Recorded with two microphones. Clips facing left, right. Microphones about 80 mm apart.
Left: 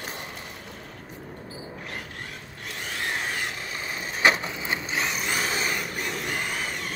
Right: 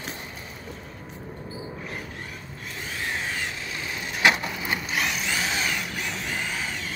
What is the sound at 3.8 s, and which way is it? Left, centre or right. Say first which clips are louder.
Vehicle: even; left.